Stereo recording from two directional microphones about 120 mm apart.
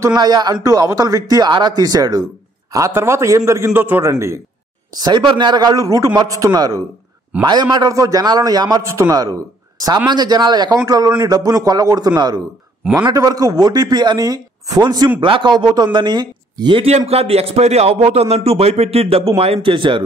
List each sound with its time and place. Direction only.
0.0 s a man's voice: 35° right (ahead or behind)
5.0 s speech: 40° right (ahead or behind)
8.8 s a man's voice: 25° right (ahead or behind)
15.1 s speech: 45° right (ahead or behind)
16.8 s speech: 55° right (ahead or behind)